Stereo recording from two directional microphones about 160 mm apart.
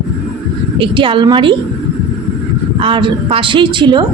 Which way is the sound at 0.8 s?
35° right (ahead or behind).